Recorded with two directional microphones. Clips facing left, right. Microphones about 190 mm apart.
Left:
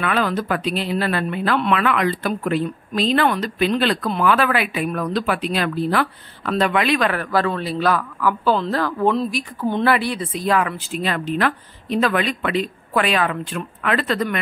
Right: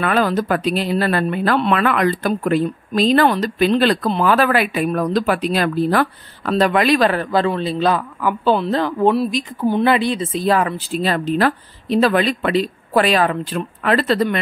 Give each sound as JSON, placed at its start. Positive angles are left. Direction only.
{"t": 0.0, "sound": "a man's voice", "side_deg": -40}